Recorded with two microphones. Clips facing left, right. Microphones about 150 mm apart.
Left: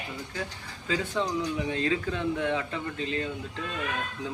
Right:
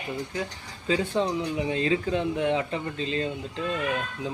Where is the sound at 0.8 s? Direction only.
25° right (ahead or behind).